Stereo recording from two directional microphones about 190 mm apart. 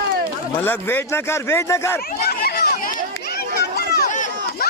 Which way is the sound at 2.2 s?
55° left (ahead or behind).